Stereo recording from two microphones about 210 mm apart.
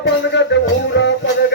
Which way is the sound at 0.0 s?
60° left (ahead or behind).